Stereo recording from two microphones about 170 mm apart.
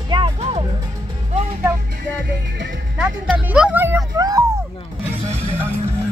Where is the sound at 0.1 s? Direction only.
30° right (ahead or behind).